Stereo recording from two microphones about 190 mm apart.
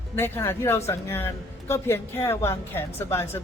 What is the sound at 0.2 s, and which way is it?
Speech, 10° left (ahead or behind).